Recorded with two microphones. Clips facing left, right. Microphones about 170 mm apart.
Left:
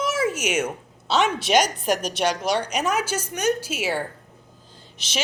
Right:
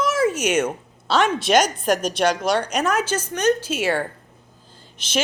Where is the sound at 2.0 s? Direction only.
55° right (ahead or behind).